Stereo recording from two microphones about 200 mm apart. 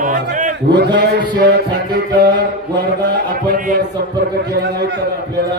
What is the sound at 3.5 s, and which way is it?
A man's voice, 45° right (ahead or behind).